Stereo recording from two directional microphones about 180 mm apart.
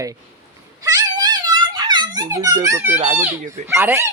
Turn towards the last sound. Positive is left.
turn(degrees=-15)  # may be behind; listen again after turning